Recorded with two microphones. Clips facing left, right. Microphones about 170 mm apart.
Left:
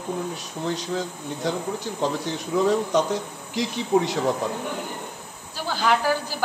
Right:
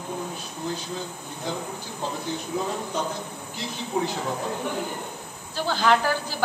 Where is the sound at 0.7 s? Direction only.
80° left.